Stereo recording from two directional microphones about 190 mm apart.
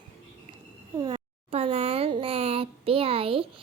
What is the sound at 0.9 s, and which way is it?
A child's voice, 25° right (ahead or behind).